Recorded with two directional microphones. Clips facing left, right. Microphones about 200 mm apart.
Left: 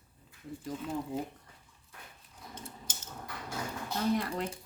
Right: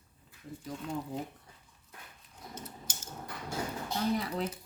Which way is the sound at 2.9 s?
10° right (ahead or behind).